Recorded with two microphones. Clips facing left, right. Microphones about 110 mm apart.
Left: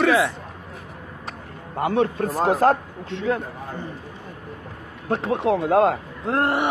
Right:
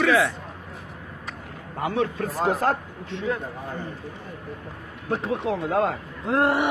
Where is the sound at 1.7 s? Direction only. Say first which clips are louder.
Left 4 dB; 50° left (ahead or behind).